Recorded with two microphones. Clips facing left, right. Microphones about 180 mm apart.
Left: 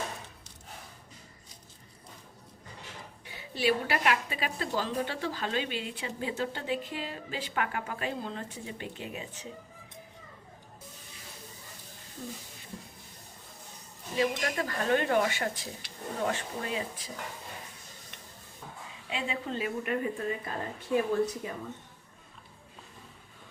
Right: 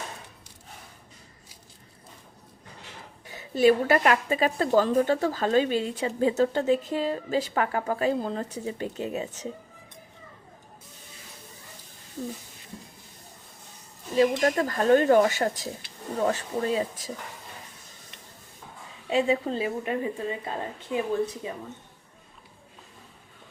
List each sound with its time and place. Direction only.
3.2 s a woman's voice: 45° right (ahead or behind)
14.2 s speech: 45° right (ahead or behind)
19.1 s a woman's voice: 40° right (ahead or behind); by 21.6 s 20° right (ahead or behind)